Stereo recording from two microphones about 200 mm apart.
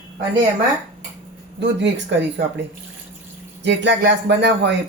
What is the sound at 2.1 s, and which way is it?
Speech, 60° right (ahead or behind).